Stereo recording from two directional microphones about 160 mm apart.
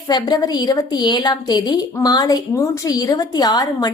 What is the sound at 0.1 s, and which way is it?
A woman's voice, 25° left (ahead or behind).